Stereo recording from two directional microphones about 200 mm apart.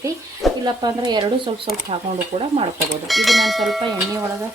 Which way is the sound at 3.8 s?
15° right (ahead or behind).